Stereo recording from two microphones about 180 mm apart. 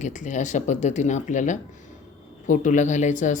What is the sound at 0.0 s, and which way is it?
Speech, 45° left (ahead or behind).